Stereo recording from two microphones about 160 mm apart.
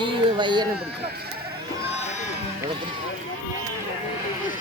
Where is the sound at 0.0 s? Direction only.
30° right (ahead or behind).